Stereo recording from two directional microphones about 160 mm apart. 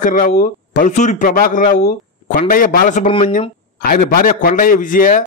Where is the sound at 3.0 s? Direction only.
30° left (ahead or behind).